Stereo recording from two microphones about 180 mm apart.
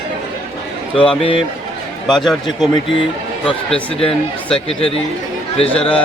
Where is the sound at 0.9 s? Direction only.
30° left (ahead or behind).